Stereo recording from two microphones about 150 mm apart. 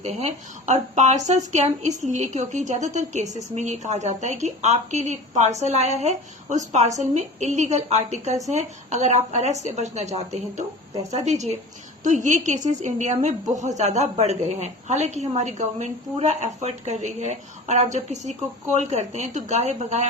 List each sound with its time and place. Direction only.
0.0 s a woman's voice: 50° right (ahead or behind)